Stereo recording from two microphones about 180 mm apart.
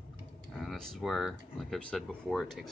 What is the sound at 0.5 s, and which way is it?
Speech, centre (ahead or behind).